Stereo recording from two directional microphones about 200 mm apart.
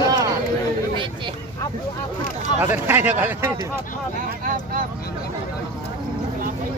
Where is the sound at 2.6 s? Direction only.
10° right (ahead or behind).